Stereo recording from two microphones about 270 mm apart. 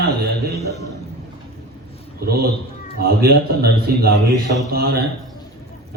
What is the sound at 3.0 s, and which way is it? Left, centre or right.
A man's voice, right.